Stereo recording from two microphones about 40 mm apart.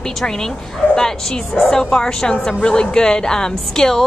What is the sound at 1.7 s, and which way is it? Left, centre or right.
A woman's voice, centre.